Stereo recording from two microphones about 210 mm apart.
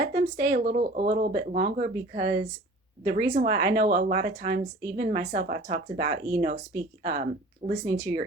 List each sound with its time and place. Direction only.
0.1 s speech: 45° right (ahead or behind)
7.6 s speech: 35° right (ahead or behind)